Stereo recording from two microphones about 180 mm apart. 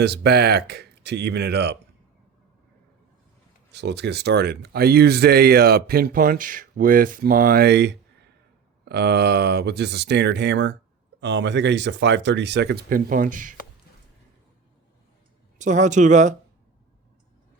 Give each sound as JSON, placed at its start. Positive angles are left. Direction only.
{"t": 0.0, "sound": "speech", "side_deg": -65}
{"t": 3.7, "sound": "speech", "side_deg": -70}
{"t": 15.5, "sound": "speech", "side_deg": -45}